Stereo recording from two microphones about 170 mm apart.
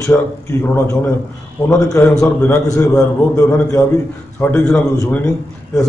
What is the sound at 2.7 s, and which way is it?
A man's voice, 15° left (ahead or behind).